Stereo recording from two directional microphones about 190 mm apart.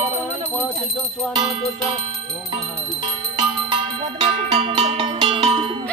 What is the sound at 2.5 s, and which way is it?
Music, 25° right (ahead or behind).